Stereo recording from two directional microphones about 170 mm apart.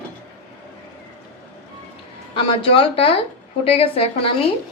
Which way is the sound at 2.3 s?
35° left (ahead or behind).